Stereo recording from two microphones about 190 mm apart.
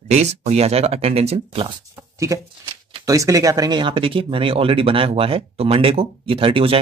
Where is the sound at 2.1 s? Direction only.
15° right (ahead or behind).